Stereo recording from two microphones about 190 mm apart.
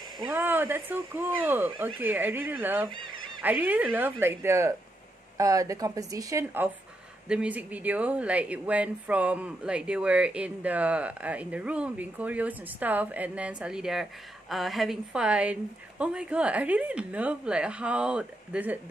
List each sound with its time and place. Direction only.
0.3 s a woman's voice: 10° right (ahead or behind)